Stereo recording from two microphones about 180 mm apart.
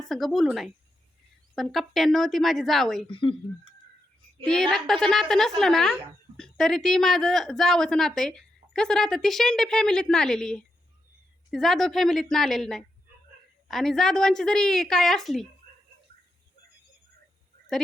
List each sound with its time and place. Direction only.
0.0 s a woman's voice: centre (ahead or behind)
3.1 s speech: 30° left (ahead or behind)
4.4 s a woman's voice: 5° left (ahead or behind)